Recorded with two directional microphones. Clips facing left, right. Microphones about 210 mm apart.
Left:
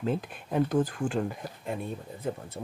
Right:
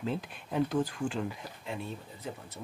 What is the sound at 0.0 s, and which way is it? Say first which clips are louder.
Speech: left 4 dB; 50° left (ahead or behind).